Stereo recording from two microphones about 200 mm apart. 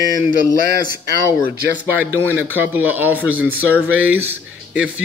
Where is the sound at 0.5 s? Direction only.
15° left (ahead or behind).